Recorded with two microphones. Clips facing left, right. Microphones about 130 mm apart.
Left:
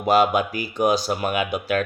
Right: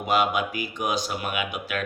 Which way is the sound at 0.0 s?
35° left (ahead or behind).